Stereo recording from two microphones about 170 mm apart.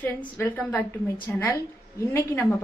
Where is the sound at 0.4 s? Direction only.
10° left (ahead or behind).